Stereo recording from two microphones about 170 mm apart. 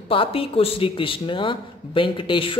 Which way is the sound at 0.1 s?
30° left (ahead or behind).